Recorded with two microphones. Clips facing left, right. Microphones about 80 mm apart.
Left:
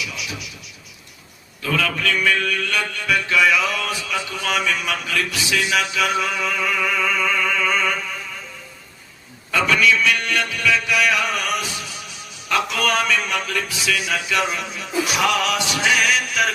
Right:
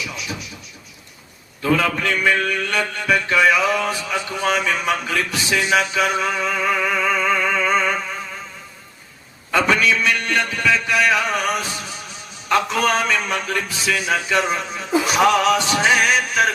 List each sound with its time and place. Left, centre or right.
0.0 s a sound: right
1.6 s a man's voice: right
9.5 s mantra: right
12.5 s a man's voice: right